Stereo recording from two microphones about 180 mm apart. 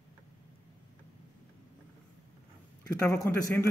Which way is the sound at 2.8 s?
20° left (ahead or behind).